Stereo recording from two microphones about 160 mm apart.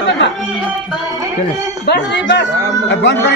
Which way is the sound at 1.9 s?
90° left.